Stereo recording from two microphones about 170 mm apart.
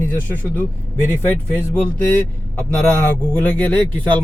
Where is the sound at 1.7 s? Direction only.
10° left (ahead or behind).